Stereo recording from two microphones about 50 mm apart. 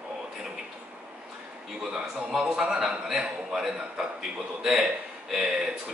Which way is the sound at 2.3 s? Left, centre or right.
Centre.